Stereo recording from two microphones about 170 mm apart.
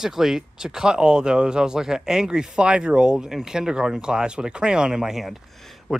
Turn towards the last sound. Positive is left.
turn(degrees=0)  # may be behind; listen again after turning